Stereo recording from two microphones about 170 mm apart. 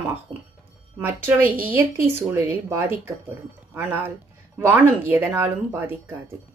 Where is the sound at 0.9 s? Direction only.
15° right (ahead or behind).